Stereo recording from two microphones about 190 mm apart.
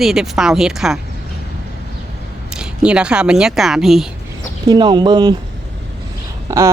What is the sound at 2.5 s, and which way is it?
A woman's voice, 5° right (ahead or behind).